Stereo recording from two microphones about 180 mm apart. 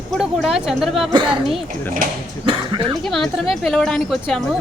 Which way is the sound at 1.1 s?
25° right (ahead or behind).